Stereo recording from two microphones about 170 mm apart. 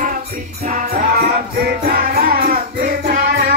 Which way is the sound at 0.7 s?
60° right (ahead or behind).